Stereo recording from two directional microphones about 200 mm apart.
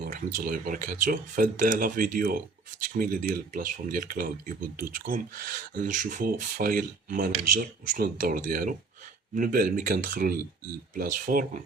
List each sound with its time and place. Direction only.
0.0 s speech: 40° right (ahead or behind)